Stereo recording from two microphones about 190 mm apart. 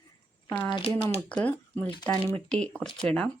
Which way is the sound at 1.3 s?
5° left (ahead or behind).